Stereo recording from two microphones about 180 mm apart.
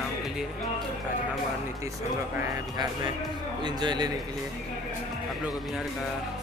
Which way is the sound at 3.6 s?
25° right (ahead or behind).